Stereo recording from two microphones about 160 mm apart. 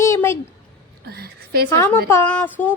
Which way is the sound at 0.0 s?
15° left (ahead or behind).